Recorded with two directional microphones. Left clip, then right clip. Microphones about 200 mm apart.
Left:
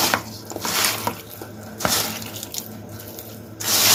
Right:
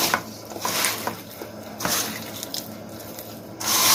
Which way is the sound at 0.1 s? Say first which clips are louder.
Left 2 dB; 5° right (ahead or behind).